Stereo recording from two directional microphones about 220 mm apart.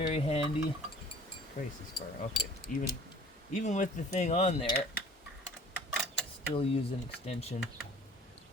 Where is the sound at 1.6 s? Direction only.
35° left (ahead or behind).